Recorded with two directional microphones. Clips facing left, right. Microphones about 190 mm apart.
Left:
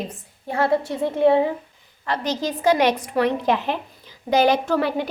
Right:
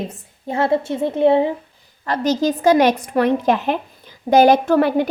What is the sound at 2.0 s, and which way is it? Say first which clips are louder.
A woman's voice: right 6 dB; 45° right (ahead or behind).